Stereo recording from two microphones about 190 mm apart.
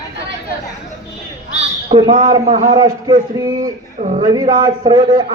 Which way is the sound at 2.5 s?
35° right (ahead or behind).